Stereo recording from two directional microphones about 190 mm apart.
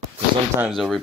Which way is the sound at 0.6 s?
Centre (ahead or behind).